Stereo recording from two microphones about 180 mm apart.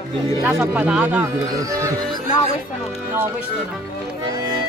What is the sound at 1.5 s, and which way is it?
Speech, 20° right (ahead or behind).